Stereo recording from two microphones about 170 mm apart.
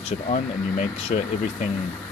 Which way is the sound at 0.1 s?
40° left (ahead or behind).